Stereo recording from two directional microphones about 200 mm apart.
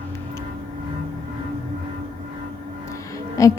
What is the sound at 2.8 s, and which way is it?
Music, 15° left (ahead or behind).